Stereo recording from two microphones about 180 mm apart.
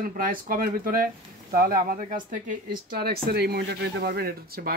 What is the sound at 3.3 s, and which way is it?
Speech, 65° right (ahead or behind).